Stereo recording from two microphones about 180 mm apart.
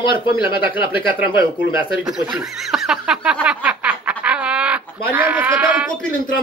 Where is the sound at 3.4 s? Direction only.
5° right (ahead or behind).